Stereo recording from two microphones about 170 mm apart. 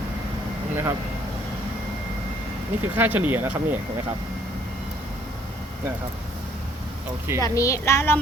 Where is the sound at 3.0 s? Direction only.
10° right (ahead or behind).